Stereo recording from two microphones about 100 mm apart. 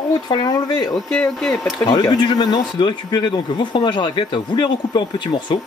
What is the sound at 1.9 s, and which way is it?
Speech, 40° left (ahead or behind).